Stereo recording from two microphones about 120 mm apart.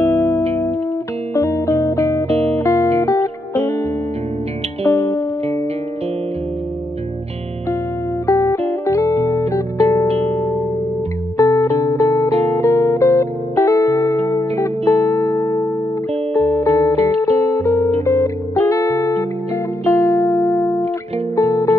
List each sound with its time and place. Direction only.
0.0 s music: 20° left (ahead or behind)
2.2 s music: 60° right (ahead or behind)
2.5 s music: 25° left (ahead or behind)
4.8 s music: 25° left (ahead or behind)
8.3 s music: 25° left (ahead or behind)
11.3 s music: 25° left (ahead or behind)
12.3 s music: 60° right (ahead or behind)
12.5 s music: 25° left (ahead or behind)